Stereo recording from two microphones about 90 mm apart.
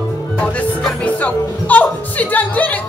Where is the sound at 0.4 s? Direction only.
15° left (ahead or behind).